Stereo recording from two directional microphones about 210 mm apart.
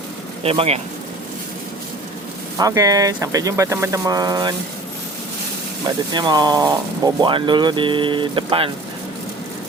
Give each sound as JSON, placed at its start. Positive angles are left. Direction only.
{"t": 0.4, "sound": "speech", "side_deg": -30}
{"t": 2.6, "sound": "speech", "side_deg": -15}
{"t": 6.1, "sound": "speech", "side_deg": -20}